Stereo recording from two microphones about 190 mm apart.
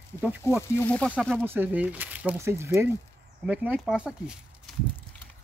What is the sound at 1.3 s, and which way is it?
Speech, 10° right (ahead or behind).